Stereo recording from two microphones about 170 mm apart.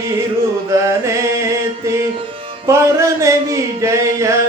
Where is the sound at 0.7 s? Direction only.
15° right (ahead or behind).